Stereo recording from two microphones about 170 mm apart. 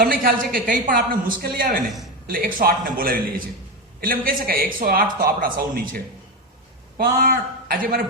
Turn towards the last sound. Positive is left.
turn(degrees=-60)  # may be behind; listen again after turning